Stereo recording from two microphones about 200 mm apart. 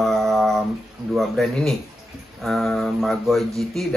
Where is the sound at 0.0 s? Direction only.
Centre (ahead or behind).